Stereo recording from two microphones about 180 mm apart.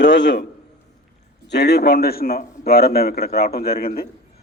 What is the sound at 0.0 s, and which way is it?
Speech, 80° left.